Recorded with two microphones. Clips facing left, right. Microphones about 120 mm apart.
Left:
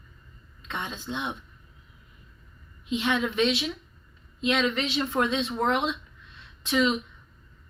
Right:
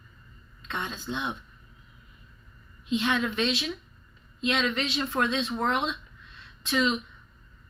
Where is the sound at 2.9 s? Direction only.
15° left (ahead or behind).